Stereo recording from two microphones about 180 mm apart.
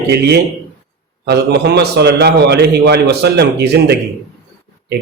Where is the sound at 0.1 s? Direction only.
65° right (ahead or behind).